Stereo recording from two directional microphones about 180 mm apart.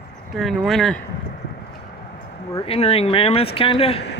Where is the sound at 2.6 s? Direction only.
35° left (ahead or behind).